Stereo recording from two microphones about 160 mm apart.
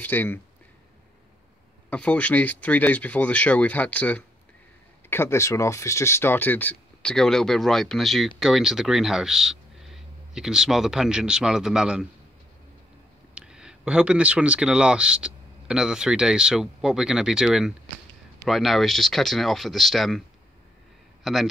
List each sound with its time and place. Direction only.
0.0 s speech: 10° left (ahead or behind)
1.9 s speech: 10° left (ahead or behind)
13.3 s a man's voice: 5° right (ahead or behind)